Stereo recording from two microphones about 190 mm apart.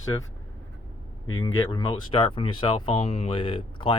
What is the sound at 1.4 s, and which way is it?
Speech, 25° left (ahead or behind).